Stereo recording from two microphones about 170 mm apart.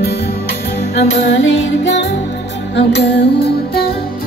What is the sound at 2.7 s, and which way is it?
Music, 75° left (ahead or behind).